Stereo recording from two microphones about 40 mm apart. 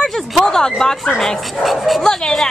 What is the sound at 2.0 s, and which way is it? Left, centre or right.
Speech, centre.